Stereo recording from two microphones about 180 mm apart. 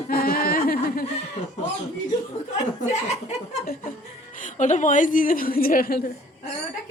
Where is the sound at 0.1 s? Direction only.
55° left (ahead or behind).